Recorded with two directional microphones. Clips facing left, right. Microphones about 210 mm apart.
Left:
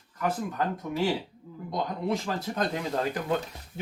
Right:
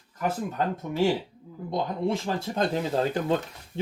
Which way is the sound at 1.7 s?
25° right (ahead or behind).